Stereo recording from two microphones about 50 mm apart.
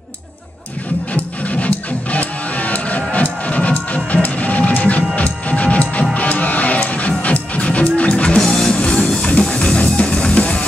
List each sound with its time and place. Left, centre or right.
1.1 s music: left
8.5 s music: centre